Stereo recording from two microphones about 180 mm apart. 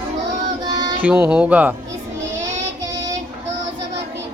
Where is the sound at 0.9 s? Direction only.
10° right (ahead or behind).